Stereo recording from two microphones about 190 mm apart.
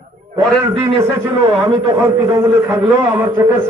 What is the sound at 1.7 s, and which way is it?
A man's voice, 15° right (ahead or behind).